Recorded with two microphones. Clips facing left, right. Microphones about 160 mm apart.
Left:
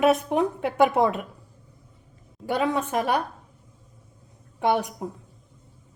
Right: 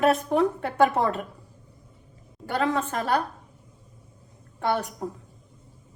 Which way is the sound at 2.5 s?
15° left (ahead or behind).